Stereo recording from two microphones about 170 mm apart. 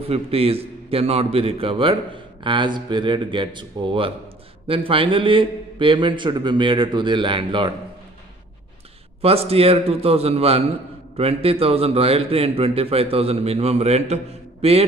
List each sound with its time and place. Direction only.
0.1 s a man's voice: 35° right (ahead or behind)
9.2 s a man's voice: 35° right (ahead or behind)